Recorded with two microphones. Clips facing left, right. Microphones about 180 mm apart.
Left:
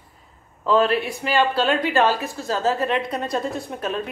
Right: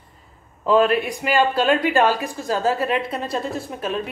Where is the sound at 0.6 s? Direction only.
15° right (ahead or behind).